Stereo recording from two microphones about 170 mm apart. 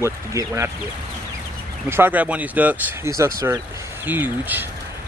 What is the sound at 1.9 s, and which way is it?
Speech, 10° right (ahead or behind).